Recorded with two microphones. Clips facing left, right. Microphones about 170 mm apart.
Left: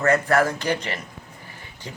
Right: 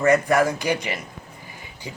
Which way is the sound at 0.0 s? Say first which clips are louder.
Right 2 dB; 15° right (ahead or behind).